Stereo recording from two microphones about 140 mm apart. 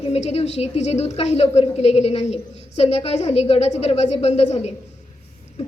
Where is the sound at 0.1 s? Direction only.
50° left (ahead or behind).